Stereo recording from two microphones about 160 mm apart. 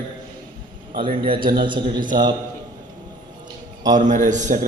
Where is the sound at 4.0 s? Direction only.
50° right (ahead or behind).